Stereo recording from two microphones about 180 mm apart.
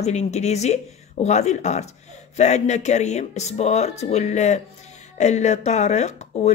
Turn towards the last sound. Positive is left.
turn(degrees=40)  # may be behind; listen again after turning